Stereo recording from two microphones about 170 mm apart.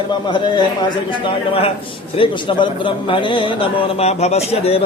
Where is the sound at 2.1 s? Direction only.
30° left (ahead or behind).